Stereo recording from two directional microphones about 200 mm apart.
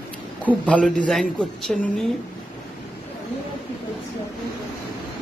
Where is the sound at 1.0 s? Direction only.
Centre (ahead or behind).